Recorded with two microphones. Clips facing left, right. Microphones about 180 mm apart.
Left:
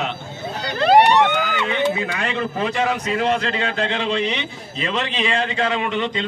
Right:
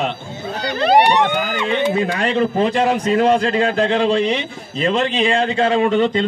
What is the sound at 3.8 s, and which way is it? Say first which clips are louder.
Speech: right 5 dB; 45° right (ahead or behind).